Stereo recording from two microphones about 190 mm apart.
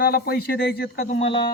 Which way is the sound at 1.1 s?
35° left (ahead or behind).